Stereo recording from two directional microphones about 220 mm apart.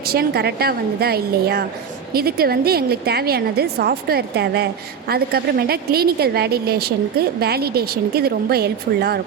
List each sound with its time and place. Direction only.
0.1 s a woman's voice: 45° right (ahead or behind)